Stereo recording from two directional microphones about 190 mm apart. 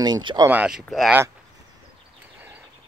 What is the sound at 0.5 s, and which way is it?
Speech, 5° right (ahead or behind).